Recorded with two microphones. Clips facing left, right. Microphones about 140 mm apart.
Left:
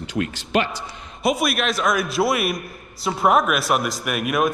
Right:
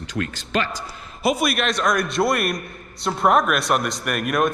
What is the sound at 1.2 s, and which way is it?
A man's voice, centre (ahead or behind).